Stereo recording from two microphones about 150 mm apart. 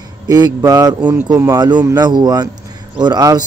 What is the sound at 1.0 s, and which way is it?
Speech, 10° right (ahead or behind).